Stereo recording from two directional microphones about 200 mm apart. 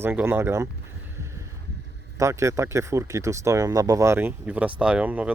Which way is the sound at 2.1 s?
15° right (ahead or behind).